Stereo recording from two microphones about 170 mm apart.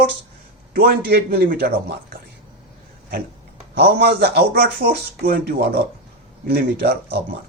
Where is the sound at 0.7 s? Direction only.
70° right (ahead or behind).